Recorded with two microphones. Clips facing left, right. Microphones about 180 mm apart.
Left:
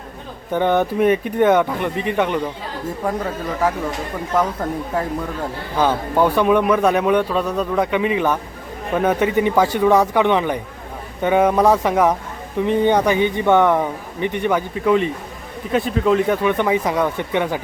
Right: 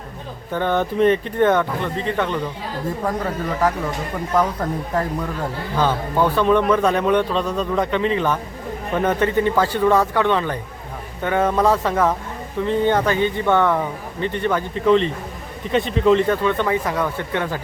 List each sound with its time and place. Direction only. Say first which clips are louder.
0.5 s a man's voice: left 3 dB; 15° left (ahead or behind)
5.7 s a man's voice: left 2 dB; 15° left (ahead or behind)